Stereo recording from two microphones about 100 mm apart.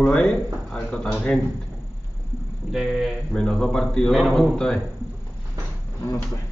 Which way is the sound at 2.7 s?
5° right (ahead or behind).